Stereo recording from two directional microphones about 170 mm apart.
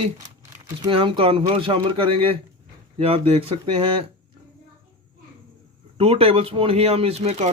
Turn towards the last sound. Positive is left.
turn(degrees=-40)  # may be behind; listen again after turning